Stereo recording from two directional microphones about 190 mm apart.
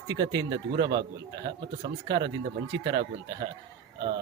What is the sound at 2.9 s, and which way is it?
Speech, 60° right (ahead or behind).